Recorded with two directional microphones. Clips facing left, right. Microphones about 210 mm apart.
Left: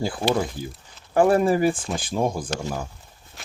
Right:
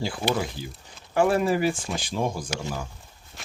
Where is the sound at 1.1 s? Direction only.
40° left (ahead or behind).